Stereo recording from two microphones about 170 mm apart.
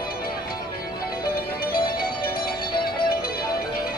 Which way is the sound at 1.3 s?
60° left (ahead or behind).